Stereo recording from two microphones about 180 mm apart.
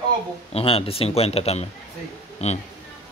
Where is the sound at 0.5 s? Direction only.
35° left (ahead or behind).